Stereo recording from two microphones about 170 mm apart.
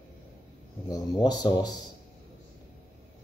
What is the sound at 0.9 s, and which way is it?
Speech, 20° left (ahead or behind).